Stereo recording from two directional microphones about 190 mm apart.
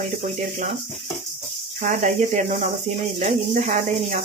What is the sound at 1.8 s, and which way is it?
Speech, 40° right (ahead or behind).